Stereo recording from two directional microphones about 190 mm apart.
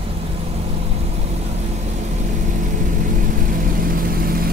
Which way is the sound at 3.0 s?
45° right (ahead or behind).